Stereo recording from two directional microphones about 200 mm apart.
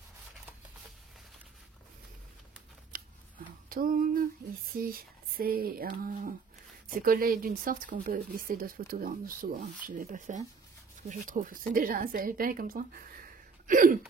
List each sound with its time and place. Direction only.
2.9 s scissors: 45° right (ahead or behind)
3.6 s speech: 45° right (ahead or behind)